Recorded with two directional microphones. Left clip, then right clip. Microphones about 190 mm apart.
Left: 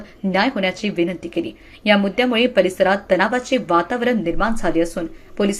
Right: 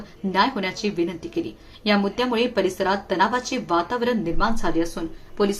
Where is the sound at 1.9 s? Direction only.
15° left (ahead or behind).